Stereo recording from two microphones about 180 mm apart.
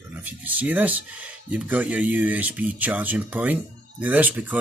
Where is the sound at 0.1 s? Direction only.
10° right (ahead or behind).